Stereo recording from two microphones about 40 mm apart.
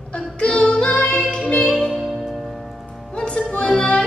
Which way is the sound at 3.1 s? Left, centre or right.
Left.